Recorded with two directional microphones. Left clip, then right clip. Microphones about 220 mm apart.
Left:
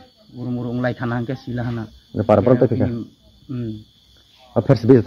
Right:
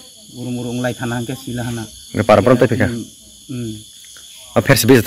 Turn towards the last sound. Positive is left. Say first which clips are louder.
# right 3 dB
turn(degrees=-20)  # may be behind; listen again after turning